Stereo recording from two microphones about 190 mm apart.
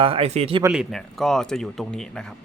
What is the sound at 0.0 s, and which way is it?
Speech, 30° right (ahead or behind).